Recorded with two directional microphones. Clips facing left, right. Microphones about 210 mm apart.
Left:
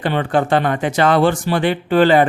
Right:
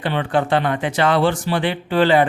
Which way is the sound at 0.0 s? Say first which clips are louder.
Left 2 dB; 45° left (ahead or behind).